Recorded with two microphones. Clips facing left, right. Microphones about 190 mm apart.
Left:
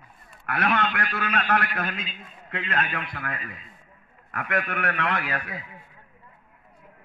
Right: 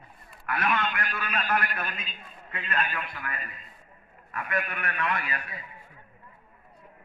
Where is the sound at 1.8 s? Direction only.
55° left (ahead or behind).